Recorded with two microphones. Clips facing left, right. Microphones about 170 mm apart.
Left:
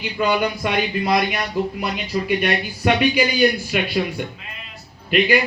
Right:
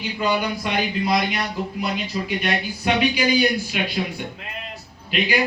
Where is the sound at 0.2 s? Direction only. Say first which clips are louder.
Left 3 dB; 55° left (ahead or behind).